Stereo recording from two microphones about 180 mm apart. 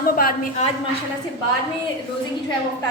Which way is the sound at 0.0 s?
55° left (ahead or behind).